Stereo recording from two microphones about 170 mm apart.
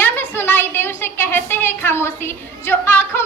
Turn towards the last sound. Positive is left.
turn(degrees=10)  # may be behind; listen again after turning